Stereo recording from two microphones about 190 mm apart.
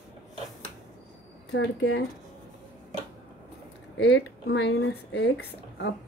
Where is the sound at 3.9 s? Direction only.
65° left (ahead or behind).